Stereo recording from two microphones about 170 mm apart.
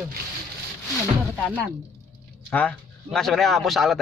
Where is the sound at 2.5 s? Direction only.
10° left (ahead or behind).